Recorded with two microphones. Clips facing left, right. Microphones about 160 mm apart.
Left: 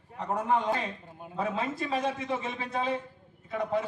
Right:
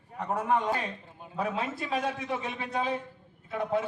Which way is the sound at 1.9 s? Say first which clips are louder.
Even; centre (ahead or behind).